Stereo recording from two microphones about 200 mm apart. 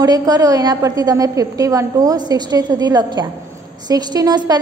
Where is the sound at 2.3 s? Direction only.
20° right (ahead or behind).